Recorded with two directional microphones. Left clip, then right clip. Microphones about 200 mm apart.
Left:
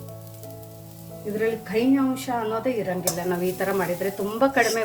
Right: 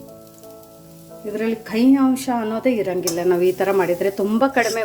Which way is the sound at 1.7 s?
50° right (ahead or behind).